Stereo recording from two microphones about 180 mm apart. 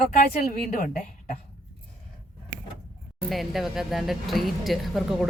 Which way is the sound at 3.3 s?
Centre (ahead or behind).